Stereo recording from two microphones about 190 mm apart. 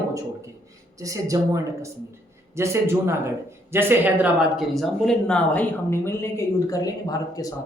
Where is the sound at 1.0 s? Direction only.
15° right (ahead or behind).